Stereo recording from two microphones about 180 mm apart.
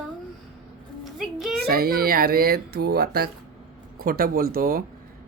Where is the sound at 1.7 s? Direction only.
55° right (ahead or behind).